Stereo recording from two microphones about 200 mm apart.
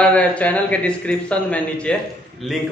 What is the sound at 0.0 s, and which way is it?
A man's voice, 5° left (ahead or behind).